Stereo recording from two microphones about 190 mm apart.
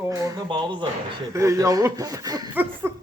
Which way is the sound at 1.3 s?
15° right (ahead or behind).